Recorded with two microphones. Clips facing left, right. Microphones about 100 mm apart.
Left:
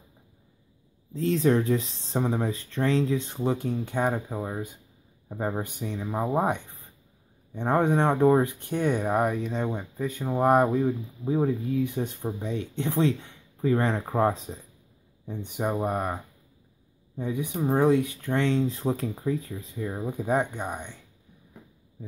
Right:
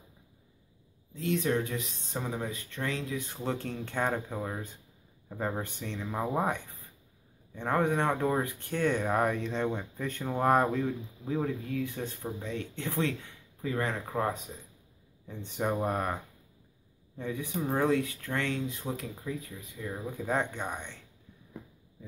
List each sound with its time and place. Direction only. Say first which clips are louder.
1.1 s speech: left 6 dB; 35° left (ahead or behind)
13.6 s speech: left 8 dB; 30° left (ahead or behind)
15.2 s speech: left 3 dB; 15° left (ahead or behind)
17.2 s speech: left 5 dB; 15° left (ahead or behind)